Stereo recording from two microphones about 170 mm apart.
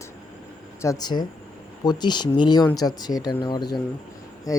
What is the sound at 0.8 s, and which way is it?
Speech, 20° left (ahead or behind).